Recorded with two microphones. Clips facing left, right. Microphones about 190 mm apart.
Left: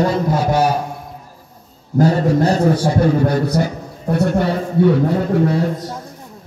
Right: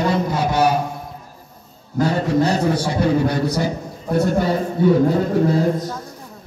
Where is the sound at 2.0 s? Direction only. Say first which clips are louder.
Left 3 dB; 40° left (ahead or behind).